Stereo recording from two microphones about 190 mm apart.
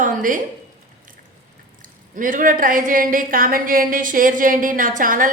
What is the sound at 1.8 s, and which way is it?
A woman's voice, 45° right (ahead or behind).